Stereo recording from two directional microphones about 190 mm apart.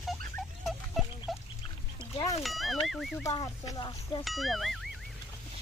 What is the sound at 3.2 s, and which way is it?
Speech, 20° left (ahead or behind).